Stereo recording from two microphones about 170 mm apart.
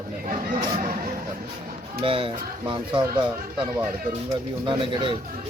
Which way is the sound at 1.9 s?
30° right (ahead or behind).